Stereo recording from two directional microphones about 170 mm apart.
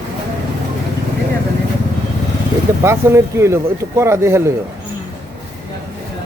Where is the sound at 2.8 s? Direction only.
15° right (ahead or behind).